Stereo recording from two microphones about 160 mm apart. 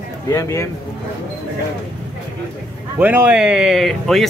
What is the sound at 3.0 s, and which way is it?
Speech, 10° right (ahead or behind).